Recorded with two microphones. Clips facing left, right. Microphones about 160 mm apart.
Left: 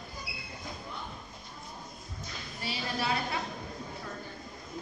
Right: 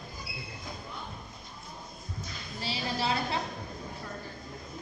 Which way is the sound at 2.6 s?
25° right (ahead or behind).